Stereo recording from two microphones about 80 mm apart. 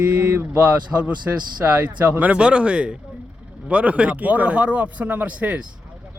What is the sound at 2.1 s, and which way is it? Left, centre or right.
A man's voice, centre.